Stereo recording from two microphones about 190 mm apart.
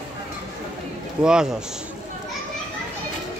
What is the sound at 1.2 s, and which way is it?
Speech, 5° right (ahead or behind).